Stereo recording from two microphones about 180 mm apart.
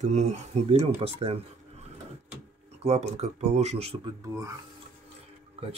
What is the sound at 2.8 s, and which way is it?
Speech, 35° right (ahead or behind).